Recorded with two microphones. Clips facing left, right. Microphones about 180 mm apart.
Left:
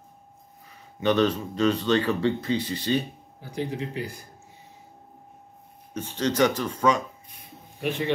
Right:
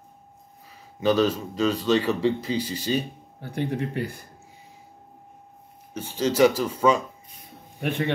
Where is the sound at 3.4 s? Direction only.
60° right (ahead or behind).